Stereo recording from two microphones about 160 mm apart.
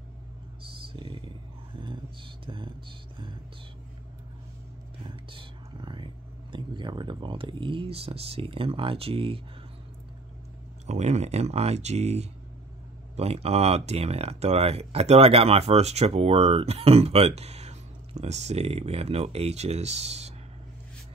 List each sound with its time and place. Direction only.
0.8 s a sound: 30° right (ahead or behind)
5.0 s speech: 30° right (ahead or behind)
10.9 s speech: 45° right (ahead or behind)